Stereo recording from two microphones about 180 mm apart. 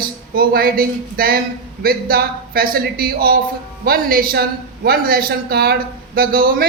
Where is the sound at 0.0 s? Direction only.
55° right (ahead or behind).